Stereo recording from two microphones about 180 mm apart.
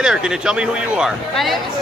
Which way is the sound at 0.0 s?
5° right (ahead or behind).